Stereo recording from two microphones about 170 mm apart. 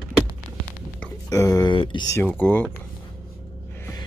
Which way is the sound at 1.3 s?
20° left (ahead or behind).